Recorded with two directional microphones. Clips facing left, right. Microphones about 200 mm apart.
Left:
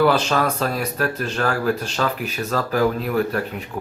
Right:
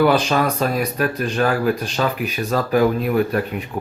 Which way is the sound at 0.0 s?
15° right (ahead or behind).